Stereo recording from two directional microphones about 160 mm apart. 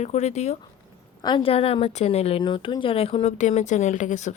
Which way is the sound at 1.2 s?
25° left (ahead or behind).